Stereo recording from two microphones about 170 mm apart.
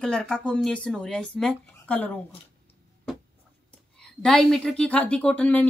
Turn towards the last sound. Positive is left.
turn(degrees=5)  # may be behind; listen again after turning